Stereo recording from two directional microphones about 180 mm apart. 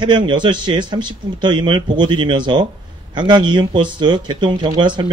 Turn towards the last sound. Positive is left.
turn(degrees=-25)  # may be behind; listen again after turning